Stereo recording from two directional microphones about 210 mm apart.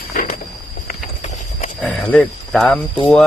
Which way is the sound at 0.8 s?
35° left (ahead or behind).